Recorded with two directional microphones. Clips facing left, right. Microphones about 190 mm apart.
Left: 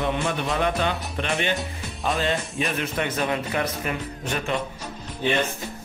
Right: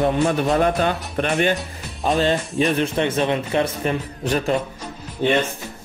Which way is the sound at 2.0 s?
35° right (ahead or behind).